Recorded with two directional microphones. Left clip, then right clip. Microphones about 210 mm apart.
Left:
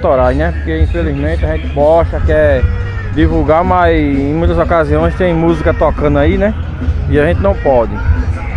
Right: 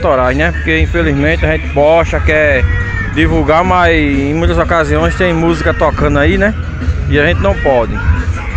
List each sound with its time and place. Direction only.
0.1 s speech: 5° right (ahead or behind)
0.9 s speech: 20° right (ahead or behind); by 7.9 s 5° left (ahead or behind)